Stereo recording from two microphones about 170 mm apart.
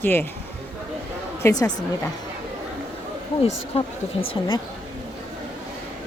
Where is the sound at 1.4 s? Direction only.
20° left (ahead or behind).